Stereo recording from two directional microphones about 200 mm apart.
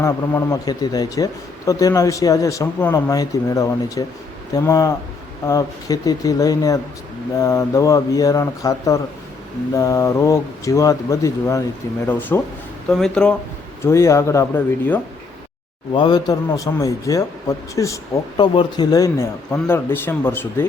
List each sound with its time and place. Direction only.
0.0 s speech: 15° left (ahead or behind)
13.8 s speech: 15° left (ahead or behind)
15.9 s speech: 20° left (ahead or behind)